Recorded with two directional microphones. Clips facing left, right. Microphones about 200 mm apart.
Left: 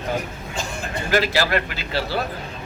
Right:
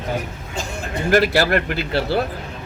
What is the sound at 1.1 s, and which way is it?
A man's voice, 50° right (ahead or behind).